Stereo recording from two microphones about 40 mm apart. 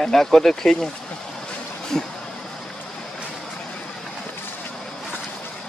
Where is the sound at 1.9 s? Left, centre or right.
Centre.